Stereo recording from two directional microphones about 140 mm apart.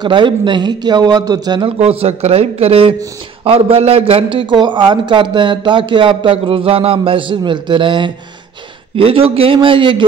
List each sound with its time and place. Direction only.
0.0 s a man's voice: 35° right (ahead or behind)
1.8 s a man's voice: 45° right (ahead or behind)